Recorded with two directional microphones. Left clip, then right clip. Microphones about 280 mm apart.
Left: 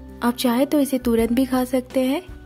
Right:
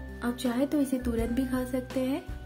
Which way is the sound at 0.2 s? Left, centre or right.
Left.